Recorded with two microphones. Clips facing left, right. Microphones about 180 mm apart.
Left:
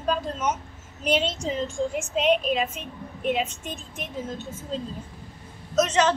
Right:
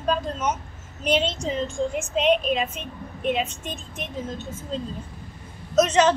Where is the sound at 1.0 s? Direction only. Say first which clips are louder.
Right 1 dB; 5° left (ahead or behind).